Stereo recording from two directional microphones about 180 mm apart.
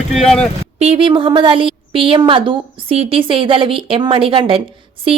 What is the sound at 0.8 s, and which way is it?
A woman's voice, 30° right (ahead or behind).